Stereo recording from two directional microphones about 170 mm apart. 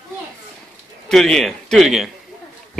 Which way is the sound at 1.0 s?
5° left (ahead or behind).